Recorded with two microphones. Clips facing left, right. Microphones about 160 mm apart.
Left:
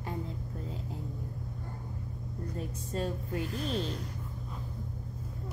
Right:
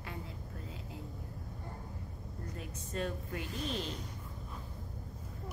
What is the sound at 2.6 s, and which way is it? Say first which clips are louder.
Speech: left 3 dB; 35° left (ahead or behind).